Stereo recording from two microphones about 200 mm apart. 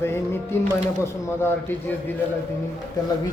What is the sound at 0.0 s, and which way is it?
A man's voice, 10° left (ahead or behind).